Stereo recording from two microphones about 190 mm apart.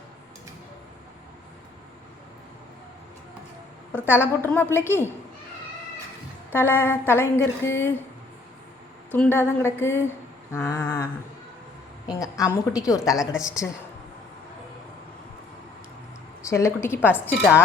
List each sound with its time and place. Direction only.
3.9 s a woman's voice: 10° left (ahead or behind)
6.5 s a woman's voice: 10° left (ahead or behind)
9.1 s a woman's voice: 10° left (ahead or behind)
12.2 s a woman's voice: 20° left (ahead or behind)
13.6 s a woman's voice: 5° left (ahead or behind)
16.5 s a woman's voice: 15° left (ahead or behind)
17.2 s a woman's voice: 5° right (ahead or behind)